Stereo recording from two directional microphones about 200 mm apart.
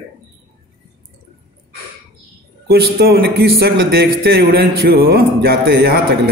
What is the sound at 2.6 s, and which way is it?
A man's voice, 50° right (ahead or behind).